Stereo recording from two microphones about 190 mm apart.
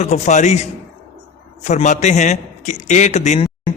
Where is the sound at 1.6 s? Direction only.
40° left (ahead or behind).